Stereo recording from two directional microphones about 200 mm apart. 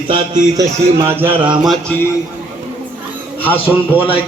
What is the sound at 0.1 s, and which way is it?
Speech, 20° right (ahead or behind).